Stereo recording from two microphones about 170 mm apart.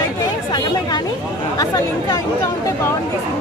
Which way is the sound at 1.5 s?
20° left (ahead or behind).